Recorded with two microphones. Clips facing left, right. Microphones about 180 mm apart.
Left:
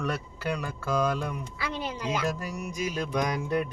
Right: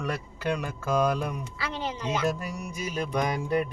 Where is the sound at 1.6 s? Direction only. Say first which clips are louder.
Even; 10° left (ahead or behind).